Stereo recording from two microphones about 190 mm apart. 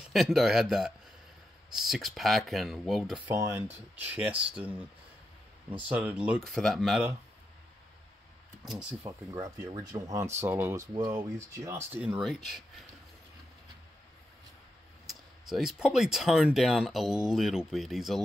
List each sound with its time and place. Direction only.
0.1 s speech: centre (ahead or behind)
3.3 s speech: 15° right (ahead or behind)
5.9 s speech: 10° right (ahead or behind)
8.6 s speech: 5° right (ahead or behind)
9.3 s speech: 20° right (ahead or behind); by 12.8 s centre (ahead or behind)
15.0 s speech: centre (ahead or behind)